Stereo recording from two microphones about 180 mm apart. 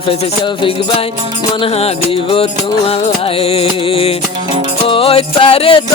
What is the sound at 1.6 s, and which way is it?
Music, 30° left (ahead or behind).